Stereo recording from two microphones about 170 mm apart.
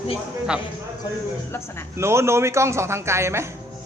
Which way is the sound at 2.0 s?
15° right (ahead or behind).